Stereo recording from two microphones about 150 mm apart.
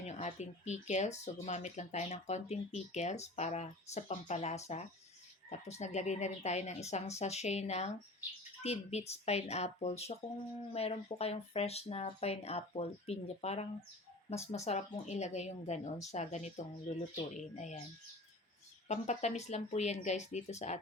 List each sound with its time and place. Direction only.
0.0 s speech: 50° left (ahead or behind)
10.2 s speech: 30° left (ahead or behind)
10.7 s speech: 45° left (ahead or behind)
18.9 s speech: 50° left (ahead or behind)